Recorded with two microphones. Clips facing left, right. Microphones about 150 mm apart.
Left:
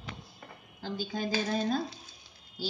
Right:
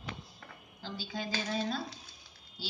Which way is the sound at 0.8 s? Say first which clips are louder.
Left 5 dB; 50° left (ahead or behind).